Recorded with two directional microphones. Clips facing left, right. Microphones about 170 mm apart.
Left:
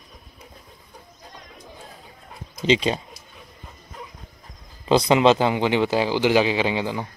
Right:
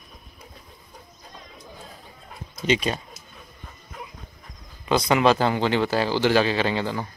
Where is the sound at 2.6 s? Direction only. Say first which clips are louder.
Left 3 dB; 25° left (ahead or behind).